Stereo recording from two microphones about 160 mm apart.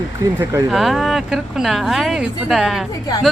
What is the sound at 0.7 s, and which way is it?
A woman's voice, centre (ahead or behind).